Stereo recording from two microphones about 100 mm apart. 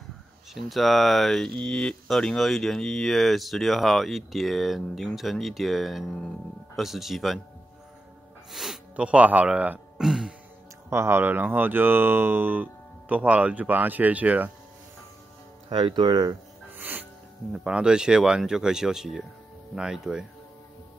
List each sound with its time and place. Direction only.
0.6 s speech: centre (ahead or behind)
8.5 s snort: centre (ahead or behind)
8.9 s speech: 10° right (ahead or behind)
10.9 s speech: 25° right (ahead or behind)
15.7 s speech: 50° right (ahead or behind)
16.7 s music: 20° right (ahead or behind)
17.5 s speech: 10° right (ahead or behind)